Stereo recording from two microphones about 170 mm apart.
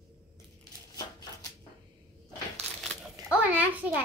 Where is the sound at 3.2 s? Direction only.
20° right (ahead or behind).